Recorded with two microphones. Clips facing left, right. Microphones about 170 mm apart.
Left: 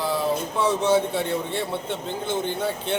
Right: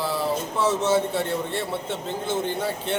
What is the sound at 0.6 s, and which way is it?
A man's voice, 5° right (ahead or behind).